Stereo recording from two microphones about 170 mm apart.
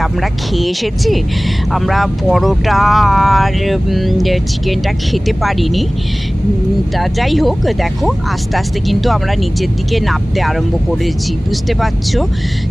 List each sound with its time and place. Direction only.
0.6 s speech: centre (ahead or behind)
7.0 s speech: centre (ahead or behind)
11.8 s speech: centre (ahead or behind)